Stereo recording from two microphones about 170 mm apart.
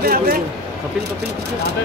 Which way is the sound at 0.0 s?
60° right (ahead or behind).